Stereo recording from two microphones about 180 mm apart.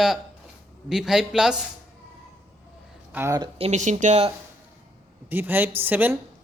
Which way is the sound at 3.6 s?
40° right (ahead or behind).